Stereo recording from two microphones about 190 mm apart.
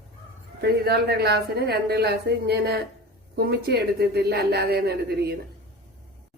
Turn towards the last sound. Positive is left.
turn(degrees=-55)  # may be behind; listen again after turning